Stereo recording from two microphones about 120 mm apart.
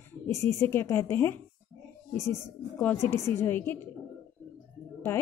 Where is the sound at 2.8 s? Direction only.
20° left (ahead or behind).